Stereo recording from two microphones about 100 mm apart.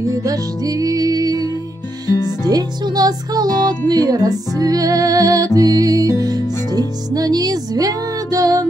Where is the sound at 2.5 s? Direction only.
40° right (ahead or behind).